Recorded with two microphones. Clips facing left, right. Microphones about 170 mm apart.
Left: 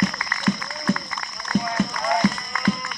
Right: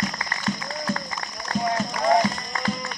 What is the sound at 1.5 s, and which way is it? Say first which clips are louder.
Run: left 1 dB; 35° right (ahead or behind).